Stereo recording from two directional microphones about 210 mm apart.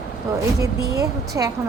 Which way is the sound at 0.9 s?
15° right (ahead or behind).